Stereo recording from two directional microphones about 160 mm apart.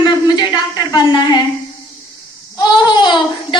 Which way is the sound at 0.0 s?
25° left (ahead or behind).